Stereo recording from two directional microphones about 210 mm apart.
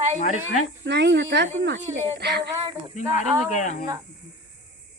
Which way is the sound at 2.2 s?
55° right (ahead or behind).